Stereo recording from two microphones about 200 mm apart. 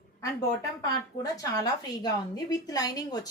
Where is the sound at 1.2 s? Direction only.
15° left (ahead or behind).